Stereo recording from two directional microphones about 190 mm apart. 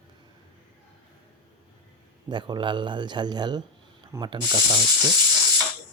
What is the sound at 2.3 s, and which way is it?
A man's voice, 25° right (ahead or behind).